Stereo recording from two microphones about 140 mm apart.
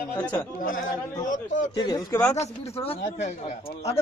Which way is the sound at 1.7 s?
30° left (ahead or behind).